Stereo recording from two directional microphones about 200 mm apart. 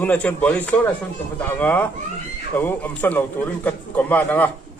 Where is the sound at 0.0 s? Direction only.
10° left (ahead or behind).